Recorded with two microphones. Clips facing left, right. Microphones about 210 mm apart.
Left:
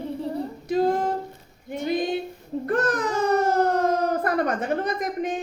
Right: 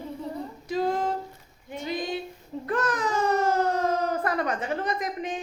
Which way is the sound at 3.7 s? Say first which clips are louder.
Left 4 dB; 60° left (ahead or behind).